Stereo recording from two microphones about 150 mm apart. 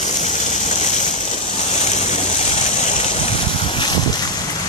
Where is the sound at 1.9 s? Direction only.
50° left (ahead or behind).